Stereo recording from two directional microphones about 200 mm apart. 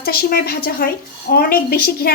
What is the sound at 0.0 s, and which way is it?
A woman's voice, 50° left (ahead or behind).